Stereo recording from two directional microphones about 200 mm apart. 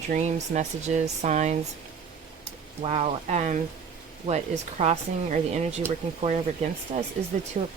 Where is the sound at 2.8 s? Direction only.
30° right (ahead or behind).